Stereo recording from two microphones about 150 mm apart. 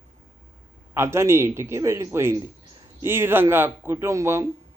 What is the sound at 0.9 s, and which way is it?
A man's voice, 15° right (ahead or behind).